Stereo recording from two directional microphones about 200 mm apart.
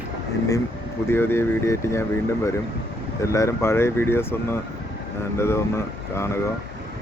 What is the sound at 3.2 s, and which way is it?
Speech, 15° left (ahead or behind).